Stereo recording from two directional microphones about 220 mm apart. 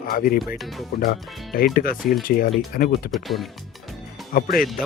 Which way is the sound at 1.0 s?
40° left (ahead or behind).